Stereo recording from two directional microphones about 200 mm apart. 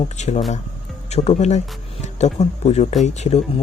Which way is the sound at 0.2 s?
35° left (ahead or behind).